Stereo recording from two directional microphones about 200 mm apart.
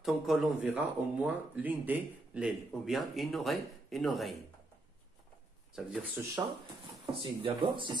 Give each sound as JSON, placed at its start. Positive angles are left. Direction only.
{"t": 0.0, "sound": "speech", "side_deg": 0}
{"t": 5.8, "sound": "speech", "side_deg": -5}
{"t": 7.2, "sound": "speech", "side_deg": -25}